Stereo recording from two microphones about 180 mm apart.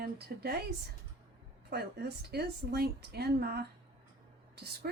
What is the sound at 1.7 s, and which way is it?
A woman's voice, 65° right (ahead or behind).